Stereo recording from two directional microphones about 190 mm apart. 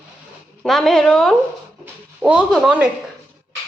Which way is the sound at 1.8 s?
5° right (ahead or behind).